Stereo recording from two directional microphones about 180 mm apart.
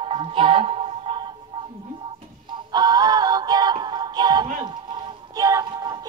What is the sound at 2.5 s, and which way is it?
Music, 20° right (ahead or behind).